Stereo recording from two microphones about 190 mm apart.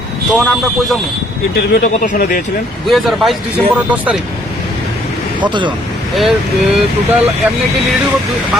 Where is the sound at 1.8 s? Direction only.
45° left (ahead or behind).